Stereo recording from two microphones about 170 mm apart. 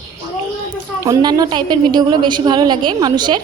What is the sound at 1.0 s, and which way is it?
Speech, 20° right (ahead or behind).